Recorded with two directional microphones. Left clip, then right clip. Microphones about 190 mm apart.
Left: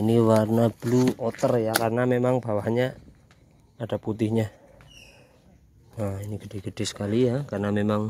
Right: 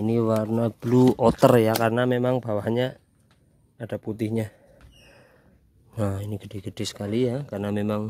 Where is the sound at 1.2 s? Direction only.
45° right (ahead or behind).